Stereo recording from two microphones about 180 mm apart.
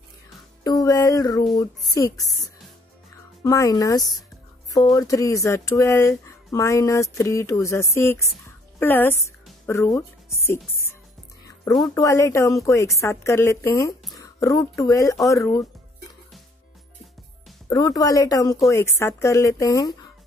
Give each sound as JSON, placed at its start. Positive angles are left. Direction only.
{"t": 0.7, "sound": "music", "side_deg": 20}
{"t": 1.9, "sound": "speech", "side_deg": 20}
{"t": 8.5, "sound": "music", "side_deg": 10}
{"t": 9.7, "sound": "speech", "side_deg": 15}
{"t": 11.4, "sound": "music", "side_deg": 20}
{"t": 11.9, "sound": "speech", "side_deg": 15}
{"t": 17.6, "sound": "speech", "side_deg": 20}